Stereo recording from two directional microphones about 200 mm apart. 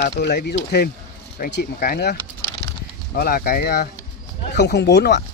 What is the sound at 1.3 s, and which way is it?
Speech, 45° left (ahead or behind).